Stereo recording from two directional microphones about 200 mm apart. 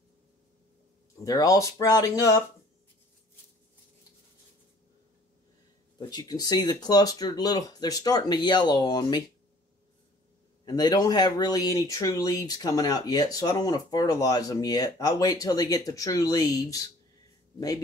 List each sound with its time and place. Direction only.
1.2 s speech: 20° left (ahead or behind)
5.9 s speech: 20° left (ahead or behind)
10.6 s speech: 20° left (ahead or behind)